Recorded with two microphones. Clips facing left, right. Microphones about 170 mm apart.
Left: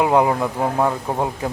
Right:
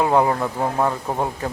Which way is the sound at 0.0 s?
15° left (ahead or behind).